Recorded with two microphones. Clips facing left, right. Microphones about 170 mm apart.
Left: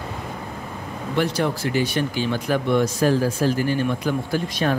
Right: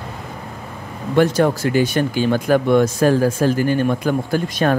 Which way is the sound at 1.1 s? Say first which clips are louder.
Right 7 dB; 45° right (ahead or behind).